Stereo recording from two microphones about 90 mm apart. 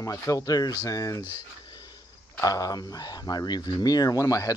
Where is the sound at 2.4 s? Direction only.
45° left (ahead or behind).